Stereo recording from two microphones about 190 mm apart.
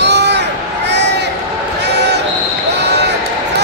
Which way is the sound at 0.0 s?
65° right (ahead or behind).